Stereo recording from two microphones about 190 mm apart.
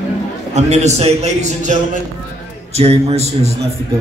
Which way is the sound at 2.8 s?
35° right (ahead or behind).